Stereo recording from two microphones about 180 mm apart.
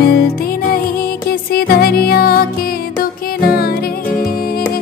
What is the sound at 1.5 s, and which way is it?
Music, 55° left (ahead or behind).